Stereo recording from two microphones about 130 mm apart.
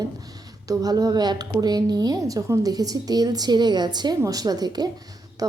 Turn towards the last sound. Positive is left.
turn(degrees=-30)  # may be behind; listen again after turning